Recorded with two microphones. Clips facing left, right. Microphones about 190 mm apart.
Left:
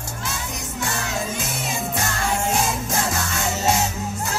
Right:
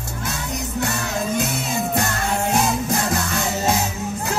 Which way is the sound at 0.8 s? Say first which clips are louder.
Right 1 dB; 65° right (ahead or behind).